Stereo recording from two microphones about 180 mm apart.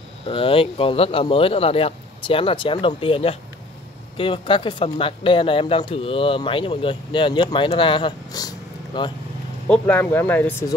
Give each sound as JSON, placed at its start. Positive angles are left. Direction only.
{"t": 0.3, "sound": "speech", "side_deg": 30}
{"t": 9.7, "sound": "speech", "side_deg": 10}